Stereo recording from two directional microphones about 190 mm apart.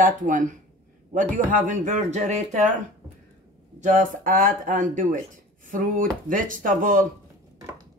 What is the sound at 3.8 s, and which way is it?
A woman's voice, 45° right (ahead or behind).